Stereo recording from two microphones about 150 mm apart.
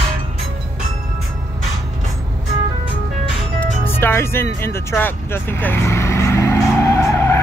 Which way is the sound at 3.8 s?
15° left (ahead or behind).